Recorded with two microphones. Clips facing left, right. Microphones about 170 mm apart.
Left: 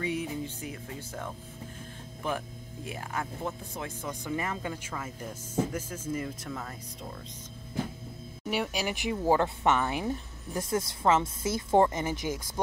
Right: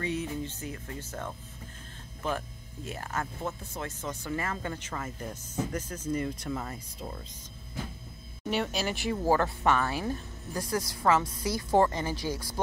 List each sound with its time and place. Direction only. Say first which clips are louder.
0.0 s speech: even; 10° left (ahead or behind); by 7.2 s 5° right (ahead or behind)
8.5 s speech: right 1 dB; 10° left (ahead or behind)